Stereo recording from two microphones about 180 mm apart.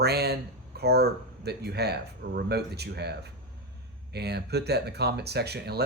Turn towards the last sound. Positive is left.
turn(degrees=-65)  # may be behind; listen again after turning